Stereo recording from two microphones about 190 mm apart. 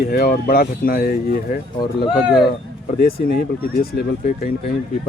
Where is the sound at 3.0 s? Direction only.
50° left (ahead or behind).